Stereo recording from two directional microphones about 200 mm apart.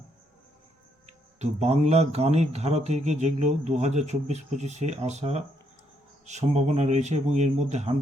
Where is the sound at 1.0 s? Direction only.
35° right (ahead or behind).